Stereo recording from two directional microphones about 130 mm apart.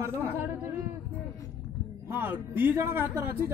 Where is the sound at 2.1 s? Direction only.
15° right (ahead or behind).